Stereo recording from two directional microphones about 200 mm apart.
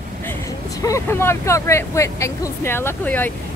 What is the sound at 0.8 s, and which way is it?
Speech, 15° left (ahead or behind).